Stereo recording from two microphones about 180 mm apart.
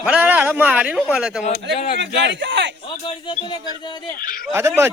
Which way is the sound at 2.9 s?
25° left (ahead or behind).